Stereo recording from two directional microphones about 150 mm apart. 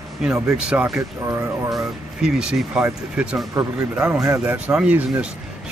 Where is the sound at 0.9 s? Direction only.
20° right (ahead or behind).